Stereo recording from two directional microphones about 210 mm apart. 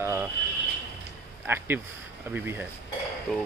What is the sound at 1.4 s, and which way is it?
Speech, 10° right (ahead or behind).